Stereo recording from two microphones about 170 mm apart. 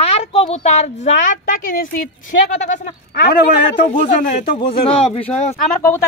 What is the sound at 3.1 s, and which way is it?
Speech, 65° left (ahead or behind).